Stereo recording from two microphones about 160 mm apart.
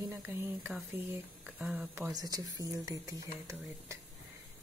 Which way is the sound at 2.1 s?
25° right (ahead or behind).